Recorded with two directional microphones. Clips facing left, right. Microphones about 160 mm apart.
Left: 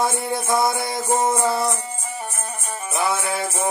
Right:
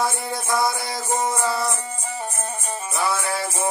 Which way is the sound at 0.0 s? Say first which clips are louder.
Left 3 dB; 20° left (ahead or behind).